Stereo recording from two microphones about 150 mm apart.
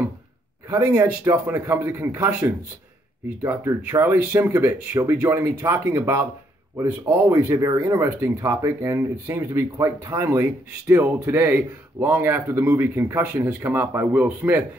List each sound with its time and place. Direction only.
0.7 s speech: 15° right (ahead or behind)